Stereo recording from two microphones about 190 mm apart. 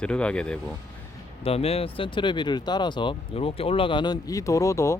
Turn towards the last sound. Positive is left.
turn(degrees=15)  # may be behind; listen again after turning